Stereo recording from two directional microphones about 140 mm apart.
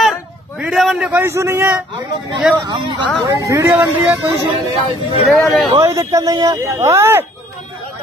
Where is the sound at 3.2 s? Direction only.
25° right (ahead or behind).